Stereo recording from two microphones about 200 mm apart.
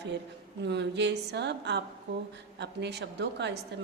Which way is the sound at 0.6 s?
60° right (ahead or behind).